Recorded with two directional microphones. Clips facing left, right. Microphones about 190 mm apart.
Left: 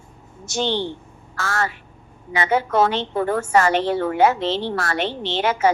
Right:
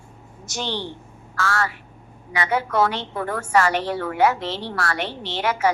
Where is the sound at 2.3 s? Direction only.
25° left (ahead or behind).